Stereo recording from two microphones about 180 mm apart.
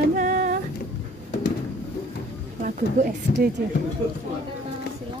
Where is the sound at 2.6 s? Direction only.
50° right (ahead or behind).